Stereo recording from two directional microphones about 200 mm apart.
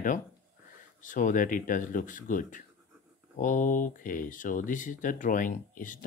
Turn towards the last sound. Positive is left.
turn(degrees=40)  # may be behind; listen again after turning